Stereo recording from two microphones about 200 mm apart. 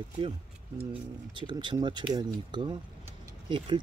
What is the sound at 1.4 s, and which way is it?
Speech, 25° right (ahead or behind).